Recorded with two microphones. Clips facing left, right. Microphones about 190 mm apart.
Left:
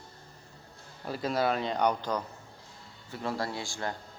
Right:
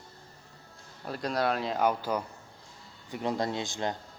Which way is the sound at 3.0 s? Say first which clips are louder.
Right 3 dB; 15° right (ahead or behind).